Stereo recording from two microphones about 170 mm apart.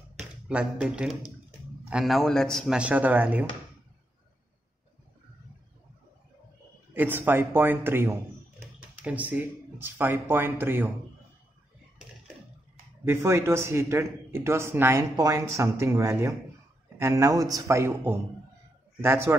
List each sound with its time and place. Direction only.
0.5 s a man's voice: 5° right (ahead or behind)
6.9 s speech: 10° right (ahead or behind)
13.0 s speech: 15° right (ahead or behind)